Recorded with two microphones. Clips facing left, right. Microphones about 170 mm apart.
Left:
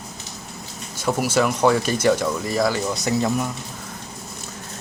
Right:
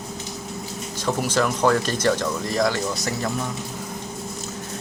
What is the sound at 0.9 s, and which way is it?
Speech, 10° left (ahead or behind).